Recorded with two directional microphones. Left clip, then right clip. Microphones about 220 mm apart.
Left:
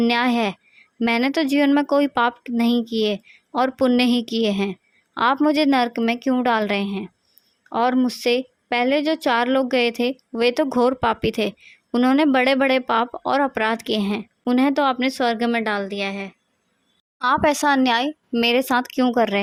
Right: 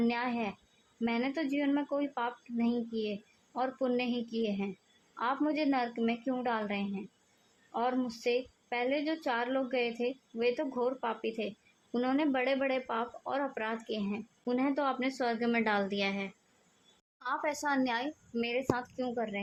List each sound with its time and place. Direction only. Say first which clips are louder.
0.0 s a woman's voice: left 13 dB; 45° left (ahead or behind); by 16.3 s 30° left (ahead or behind)
17.2 s a woman's voice: left 16 dB; 45° left (ahead or behind)